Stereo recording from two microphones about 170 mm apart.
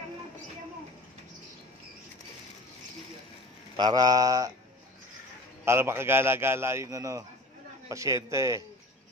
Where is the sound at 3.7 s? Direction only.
25° right (ahead or behind).